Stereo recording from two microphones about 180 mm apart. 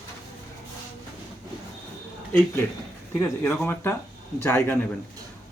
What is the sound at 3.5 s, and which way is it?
Speech, 10° left (ahead or behind).